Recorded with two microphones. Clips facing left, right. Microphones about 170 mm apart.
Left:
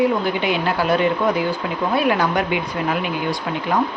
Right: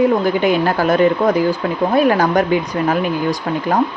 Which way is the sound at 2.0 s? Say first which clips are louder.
Right 6 dB; 45° right (ahead or behind).